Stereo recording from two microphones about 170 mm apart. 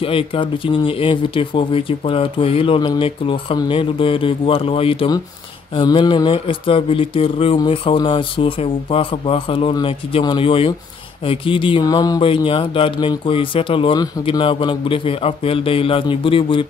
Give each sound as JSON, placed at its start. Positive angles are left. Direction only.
{"t": 0.0, "sound": "speech", "side_deg": 35}